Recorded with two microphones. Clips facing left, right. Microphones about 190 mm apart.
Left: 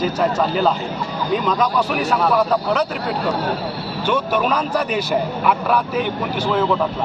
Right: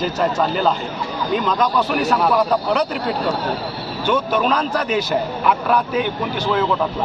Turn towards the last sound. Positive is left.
turn(degrees=5)  # may be behind; listen again after turning